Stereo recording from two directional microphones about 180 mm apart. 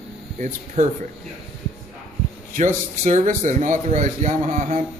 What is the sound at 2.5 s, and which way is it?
A man's voice, 45° right (ahead or behind).